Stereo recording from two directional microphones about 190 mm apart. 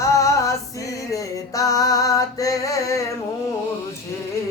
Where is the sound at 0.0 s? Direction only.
15° left (ahead or behind).